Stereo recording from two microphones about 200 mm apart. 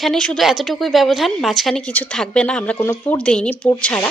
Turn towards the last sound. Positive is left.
turn(degrees=5)  # may be behind; listen again after turning